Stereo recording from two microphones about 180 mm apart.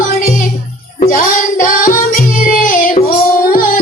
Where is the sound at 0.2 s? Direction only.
50° left (ahead or behind).